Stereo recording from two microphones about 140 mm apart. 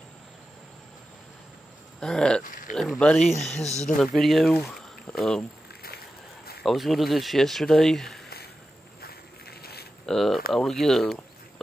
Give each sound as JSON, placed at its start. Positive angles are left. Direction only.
{"t": 2.0, "sound": "speech", "side_deg": 5}
{"t": 2.4, "sound": "a sound", "side_deg": 70}
{"t": 2.7, "sound": "speech", "side_deg": 0}
{"t": 6.6, "sound": "speech", "side_deg": 0}
{"t": 10.0, "sound": "speech", "side_deg": 0}